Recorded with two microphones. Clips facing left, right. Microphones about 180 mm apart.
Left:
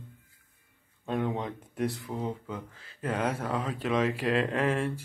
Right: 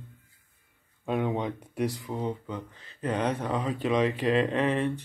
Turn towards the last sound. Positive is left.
turn(degrees=5)  # may be behind; listen again after turning